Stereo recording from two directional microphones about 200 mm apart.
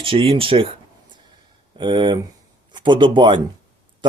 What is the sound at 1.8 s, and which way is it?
Speech, 20° right (ahead or behind).